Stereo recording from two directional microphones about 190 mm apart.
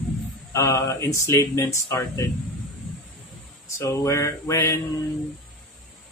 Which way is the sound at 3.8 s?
15° left (ahead or behind).